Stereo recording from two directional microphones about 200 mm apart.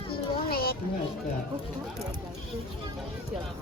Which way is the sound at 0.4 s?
50° left (ahead or behind).